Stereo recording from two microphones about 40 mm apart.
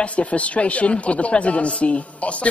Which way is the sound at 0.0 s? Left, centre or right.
Left.